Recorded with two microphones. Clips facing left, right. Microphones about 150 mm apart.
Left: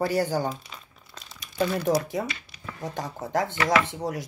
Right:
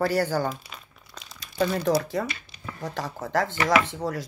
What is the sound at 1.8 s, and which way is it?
Speech, 20° left (ahead or behind).